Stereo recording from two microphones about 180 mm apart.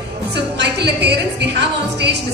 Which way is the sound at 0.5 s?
70° right (ahead or behind).